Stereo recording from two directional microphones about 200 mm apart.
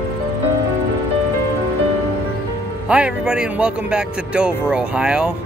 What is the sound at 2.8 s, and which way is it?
Speech, 5° right (ahead or behind).